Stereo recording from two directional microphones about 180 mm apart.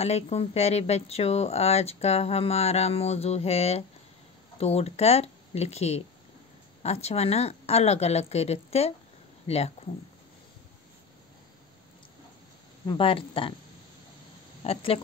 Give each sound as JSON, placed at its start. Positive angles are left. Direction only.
{"t": 0.0, "sound": "speech", "side_deg": 35}
{"t": 12.8, "sound": "speech", "side_deg": 30}
{"t": 14.6, "sound": "speech", "side_deg": 30}